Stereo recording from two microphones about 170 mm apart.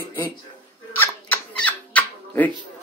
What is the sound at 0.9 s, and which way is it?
Music, 10° left (ahead or behind).